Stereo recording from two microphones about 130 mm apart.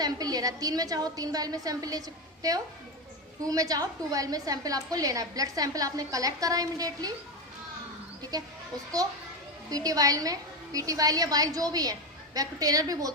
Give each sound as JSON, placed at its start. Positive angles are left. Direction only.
{"t": 0.0, "sound": "a woman's voice", "side_deg": -30}
{"t": 9.6, "sound": "a woman's voice", "side_deg": -30}